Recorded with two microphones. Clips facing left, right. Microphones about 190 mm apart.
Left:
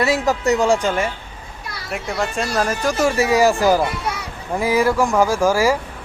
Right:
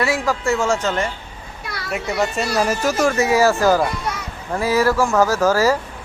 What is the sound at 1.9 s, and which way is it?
Speech, centre (ahead or behind).